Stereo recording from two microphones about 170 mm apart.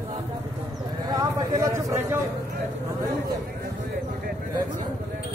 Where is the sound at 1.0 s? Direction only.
20° right (ahead or behind).